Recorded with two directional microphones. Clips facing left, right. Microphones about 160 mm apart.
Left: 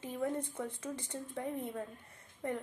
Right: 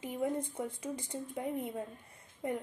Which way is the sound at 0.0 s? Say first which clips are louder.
Right 2 dB; 15° right (ahead or behind).